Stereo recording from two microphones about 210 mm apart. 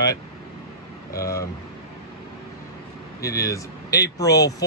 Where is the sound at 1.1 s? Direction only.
15° left (ahead or behind).